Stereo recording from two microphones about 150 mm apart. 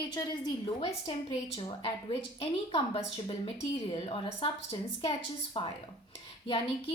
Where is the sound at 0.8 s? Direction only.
40° left (ahead or behind).